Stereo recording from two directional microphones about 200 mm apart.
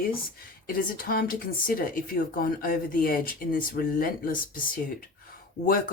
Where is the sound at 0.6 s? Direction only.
45° left (ahead or behind).